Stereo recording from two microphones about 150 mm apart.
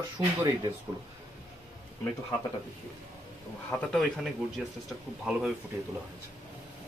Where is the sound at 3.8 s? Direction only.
Centre (ahead or behind).